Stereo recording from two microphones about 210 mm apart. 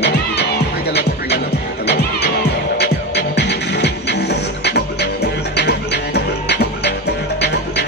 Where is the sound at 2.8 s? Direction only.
55° left (ahead or behind).